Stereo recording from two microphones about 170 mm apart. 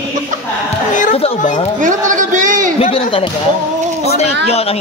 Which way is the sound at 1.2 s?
45° left (ahead or behind).